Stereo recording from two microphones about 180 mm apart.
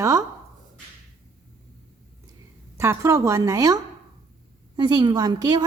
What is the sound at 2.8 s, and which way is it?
A woman's voice, 15° right (ahead or behind).